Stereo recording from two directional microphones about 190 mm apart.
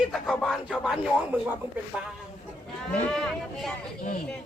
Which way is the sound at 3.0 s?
5° left (ahead or behind).